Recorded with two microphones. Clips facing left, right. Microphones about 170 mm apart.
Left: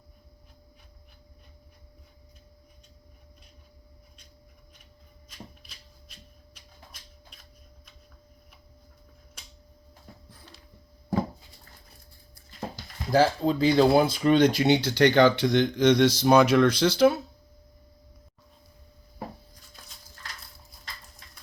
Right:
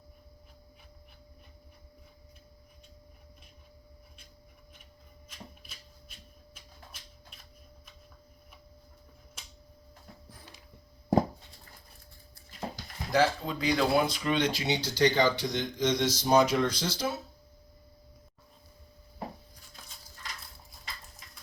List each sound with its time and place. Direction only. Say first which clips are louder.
13.1 s speech: left 5 dB; 35° left (ahead or behind)
14.3 s speech: left 10 dB; 55° left (ahead or behind)